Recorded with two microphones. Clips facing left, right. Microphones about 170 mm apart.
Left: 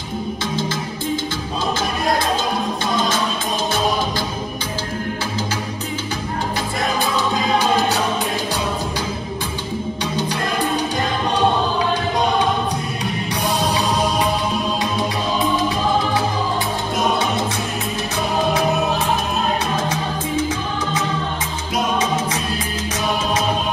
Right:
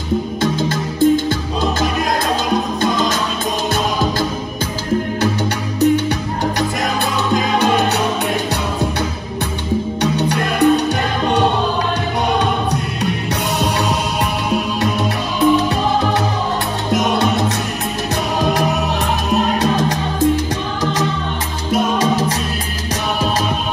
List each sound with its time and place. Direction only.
0.4 s music: 50° right (ahead or behind)
7.5 s music: 65° right (ahead or behind)
10.1 s music: 65° right (ahead or behind)
21.9 s music: 35° right (ahead or behind)